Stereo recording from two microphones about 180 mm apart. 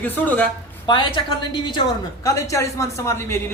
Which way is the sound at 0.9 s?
25° left (ahead or behind).